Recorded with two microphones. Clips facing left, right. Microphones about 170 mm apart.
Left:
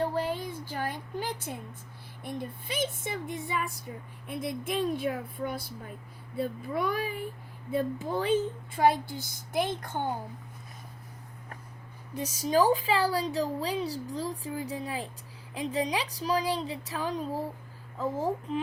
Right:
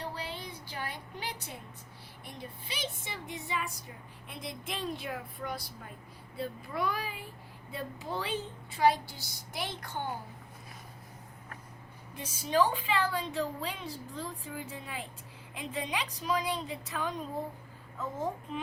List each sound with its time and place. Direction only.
0.0 s a sound: 45° left (ahead or behind)
2.2 s speech: 50° left (ahead or behind)
12.1 s a woman's voice: 40° left (ahead or behind)